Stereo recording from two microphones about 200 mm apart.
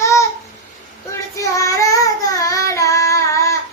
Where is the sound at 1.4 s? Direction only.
15° left (ahead or behind).